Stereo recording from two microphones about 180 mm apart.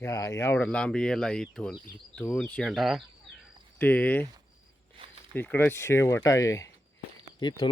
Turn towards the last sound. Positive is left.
turn(degrees=25)  # may be behind; listen again after turning